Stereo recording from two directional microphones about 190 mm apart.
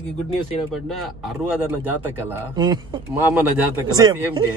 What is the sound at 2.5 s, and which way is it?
Speech, 20° right (ahead or behind).